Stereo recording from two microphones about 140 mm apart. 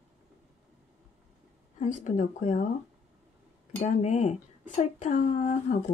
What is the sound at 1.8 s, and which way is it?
Speech, 60° left (ahead or behind).